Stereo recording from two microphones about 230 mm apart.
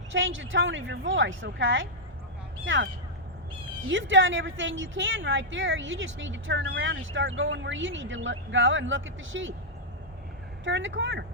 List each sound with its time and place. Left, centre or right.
0.1 s a woman's voice: right
10.6 s a woman's voice: right